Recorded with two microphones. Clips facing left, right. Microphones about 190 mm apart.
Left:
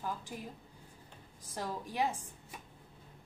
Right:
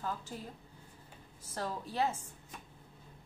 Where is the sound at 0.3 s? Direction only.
10° left (ahead or behind).